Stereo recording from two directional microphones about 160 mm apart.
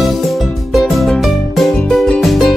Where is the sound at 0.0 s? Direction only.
Centre (ahead or behind).